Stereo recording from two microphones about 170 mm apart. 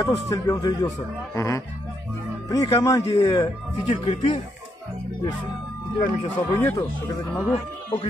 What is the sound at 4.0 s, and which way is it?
Speech, 35° left (ahead or behind).